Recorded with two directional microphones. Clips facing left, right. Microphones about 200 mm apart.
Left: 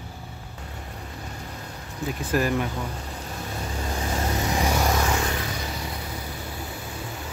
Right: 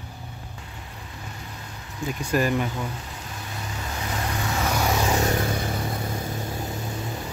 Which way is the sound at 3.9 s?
30° left (ahead or behind).